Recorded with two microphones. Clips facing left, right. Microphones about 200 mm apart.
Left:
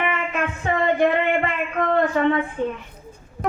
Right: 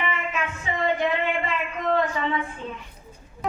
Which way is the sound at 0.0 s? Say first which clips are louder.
Left 4 dB; 55° left (ahead or behind).